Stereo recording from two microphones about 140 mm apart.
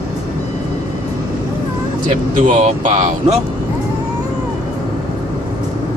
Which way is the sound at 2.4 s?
70° right (ahead or behind).